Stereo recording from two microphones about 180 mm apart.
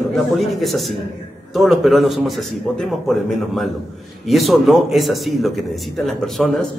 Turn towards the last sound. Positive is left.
turn(degrees=0)  # may be behind; listen again after turning